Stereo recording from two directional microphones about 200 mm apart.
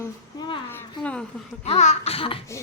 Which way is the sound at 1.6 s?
35° left (ahead or behind).